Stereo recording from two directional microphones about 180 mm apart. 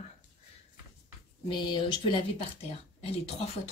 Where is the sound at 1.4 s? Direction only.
25° left (ahead or behind).